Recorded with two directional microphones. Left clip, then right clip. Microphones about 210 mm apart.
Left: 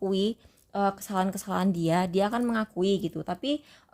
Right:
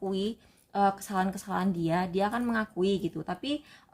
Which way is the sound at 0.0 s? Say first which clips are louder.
Left 4 dB; 40° left (ahead or behind).